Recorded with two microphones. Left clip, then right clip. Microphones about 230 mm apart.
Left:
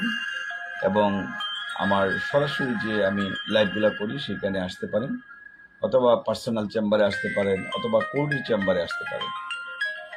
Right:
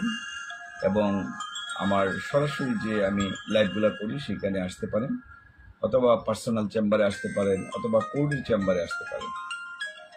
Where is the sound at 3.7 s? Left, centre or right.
Centre.